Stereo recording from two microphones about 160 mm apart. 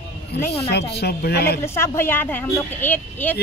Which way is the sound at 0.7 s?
90° left.